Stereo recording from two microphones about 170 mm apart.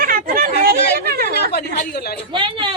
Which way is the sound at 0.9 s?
65° right (ahead or behind).